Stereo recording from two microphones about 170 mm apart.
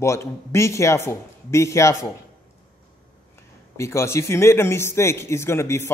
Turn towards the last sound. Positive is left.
turn(degrees=15)  # may be behind; listen again after turning